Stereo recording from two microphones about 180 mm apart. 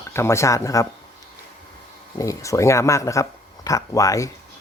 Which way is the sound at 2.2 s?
15° left (ahead or behind).